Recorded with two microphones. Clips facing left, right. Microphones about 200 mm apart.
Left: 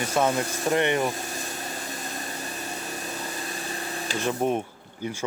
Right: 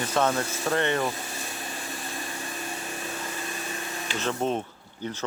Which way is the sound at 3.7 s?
35° left (ahead or behind).